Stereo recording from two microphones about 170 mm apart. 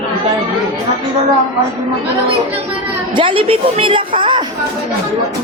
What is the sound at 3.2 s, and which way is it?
A woman's voice, 30° right (ahead or behind).